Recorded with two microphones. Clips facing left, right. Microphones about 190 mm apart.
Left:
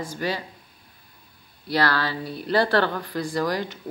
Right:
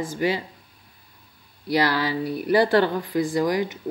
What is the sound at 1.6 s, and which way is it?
Speech, 15° right (ahead or behind).